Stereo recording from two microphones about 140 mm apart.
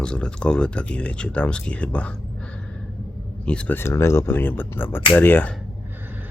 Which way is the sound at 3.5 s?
10° left (ahead or behind).